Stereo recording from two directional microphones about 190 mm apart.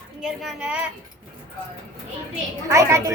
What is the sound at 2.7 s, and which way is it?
Speech, 15° right (ahead or behind).